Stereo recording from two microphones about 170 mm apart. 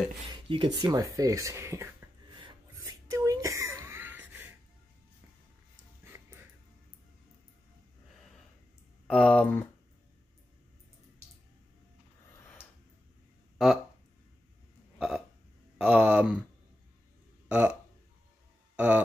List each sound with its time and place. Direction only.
0.3 s a sound: 30° right (ahead or behind)
0.7 s speech: 20° right (ahead or behind)
2.4 s a sound: 20° right (ahead or behind)
9.0 s speech: 5° left (ahead or behind)
15.0 s burping: 5° right (ahead or behind)
15.8 s speech: 5° right (ahead or behind)
17.5 s speech: 5° right (ahead or behind)
18.8 s speech: 10° right (ahead or behind)